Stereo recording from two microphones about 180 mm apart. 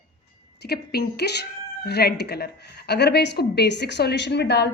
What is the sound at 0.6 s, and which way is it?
A woman's voice, 65° left (ahead or behind).